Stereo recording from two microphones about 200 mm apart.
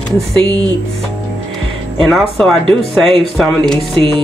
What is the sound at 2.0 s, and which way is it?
Speech, centre (ahead or behind).